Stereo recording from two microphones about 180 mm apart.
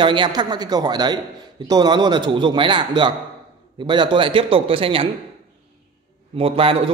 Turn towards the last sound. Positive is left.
turn(degrees=-30)  # may be behind; listen again after turning